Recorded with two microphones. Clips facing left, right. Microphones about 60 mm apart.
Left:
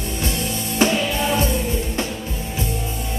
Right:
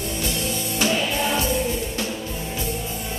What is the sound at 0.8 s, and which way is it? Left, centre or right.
Music, left.